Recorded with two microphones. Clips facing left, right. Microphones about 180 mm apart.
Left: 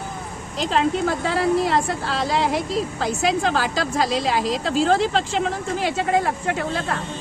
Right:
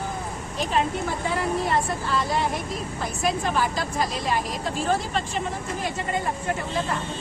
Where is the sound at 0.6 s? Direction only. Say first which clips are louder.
Left 5 dB; 90° left.